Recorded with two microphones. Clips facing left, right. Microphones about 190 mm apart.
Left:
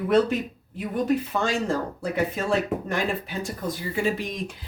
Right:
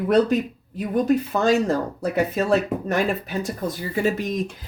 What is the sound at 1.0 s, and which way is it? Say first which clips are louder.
Speech: right 4 dB; 40° right (ahead or behind).